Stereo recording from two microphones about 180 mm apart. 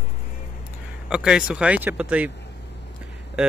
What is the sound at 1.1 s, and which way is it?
Speech, 5° right (ahead or behind).